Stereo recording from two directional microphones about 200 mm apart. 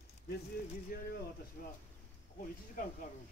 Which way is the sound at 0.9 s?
50° left (ahead or behind).